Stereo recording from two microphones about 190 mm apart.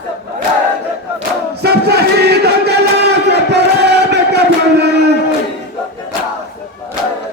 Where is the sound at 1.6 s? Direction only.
60° right (ahead or behind).